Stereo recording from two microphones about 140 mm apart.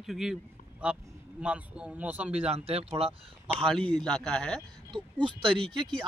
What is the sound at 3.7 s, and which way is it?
Speech, 5° left (ahead or behind).